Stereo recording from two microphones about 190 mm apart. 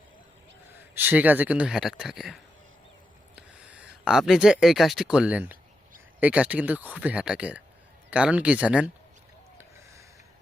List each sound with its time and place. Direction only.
0.9 s speech: 10° right (ahead or behind)